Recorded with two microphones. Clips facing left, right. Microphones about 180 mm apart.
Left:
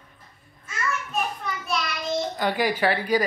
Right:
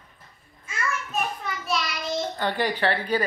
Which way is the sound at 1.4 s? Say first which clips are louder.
Even; centre (ahead or behind).